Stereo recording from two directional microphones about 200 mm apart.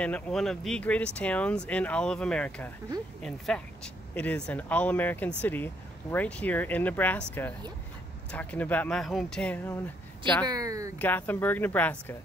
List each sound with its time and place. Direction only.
0.0 s speech: 5° left (ahead or behind)
10.4 s speech: 20° right (ahead or behind)
11.0 s speech: 10° left (ahead or behind)